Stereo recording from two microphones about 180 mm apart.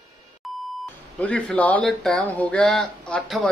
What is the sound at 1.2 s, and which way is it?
Speech, 5° left (ahead or behind).